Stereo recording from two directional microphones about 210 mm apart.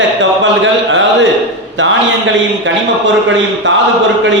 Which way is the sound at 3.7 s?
60° right (ahead or behind).